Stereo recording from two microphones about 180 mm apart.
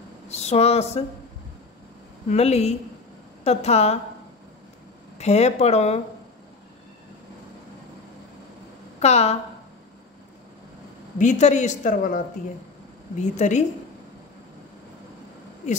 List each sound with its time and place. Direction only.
0.3 s speech: 35° left (ahead or behind)
2.2 s speech: 35° left (ahead or behind)
5.2 s speech: 35° left (ahead or behind)
9.0 s speech: 35° left (ahead or behind)
11.1 s a man's voice: 40° left (ahead or behind)
13.2 s speech: 40° left (ahead or behind)